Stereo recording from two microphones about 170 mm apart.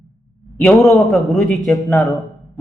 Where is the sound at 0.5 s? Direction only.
10° left (ahead or behind).